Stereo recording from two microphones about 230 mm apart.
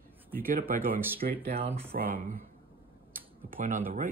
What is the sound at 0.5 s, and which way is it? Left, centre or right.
Speech, right.